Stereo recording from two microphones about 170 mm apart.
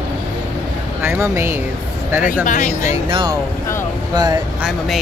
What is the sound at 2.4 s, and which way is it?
Speech, 45° left (ahead or behind).